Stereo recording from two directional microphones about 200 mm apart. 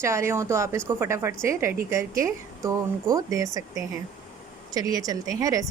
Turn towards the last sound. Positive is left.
turn(degrees=-15)  # may be behind; listen again after turning